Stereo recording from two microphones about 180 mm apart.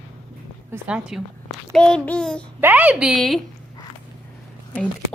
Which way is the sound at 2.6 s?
10° right (ahead or behind).